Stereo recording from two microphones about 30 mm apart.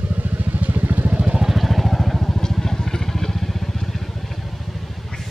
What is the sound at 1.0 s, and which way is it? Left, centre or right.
Vehicle, right.